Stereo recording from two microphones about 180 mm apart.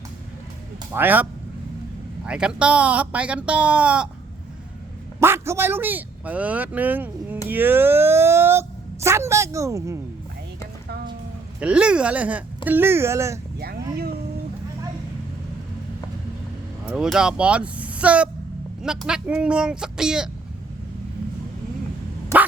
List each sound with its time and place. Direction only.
0.9 s speech: 10° right (ahead or behind)
5.2 s speech: 15° right (ahead or behind)
11.6 s speech: 5° right (ahead or behind)
13.6 s speech: 60° right (ahead or behind)
16.8 s speech: 5° right (ahead or behind)